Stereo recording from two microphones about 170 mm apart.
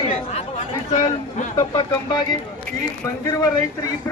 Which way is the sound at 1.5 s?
25° left (ahead or behind).